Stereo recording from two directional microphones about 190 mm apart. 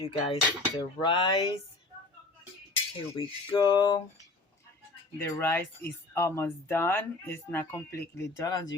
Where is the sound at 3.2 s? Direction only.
25° left (ahead or behind).